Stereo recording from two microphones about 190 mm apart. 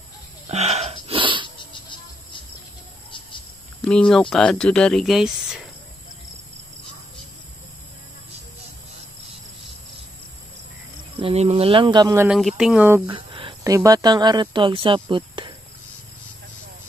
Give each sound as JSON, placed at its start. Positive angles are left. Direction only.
{"t": 0.5, "sound": "wheeze", "side_deg": -35}
{"t": 1.6, "sound": "music", "side_deg": 25}
{"t": 3.8, "sound": "speech", "side_deg": 5}
{"t": 11.1, "sound": "speech", "side_deg": -35}
{"t": 12.3, "sound": "speech", "side_deg": 0}
{"t": 13.1, "sound": "a sound", "side_deg": -25}
{"t": 13.7, "sound": "speech", "side_deg": -20}